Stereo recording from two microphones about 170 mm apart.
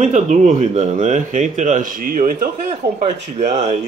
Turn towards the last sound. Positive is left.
turn(degrees=-40)  # may be behind; listen again after turning